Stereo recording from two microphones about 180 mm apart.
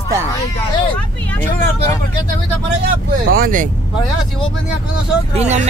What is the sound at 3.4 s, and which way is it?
Speech, 45° right (ahead or behind).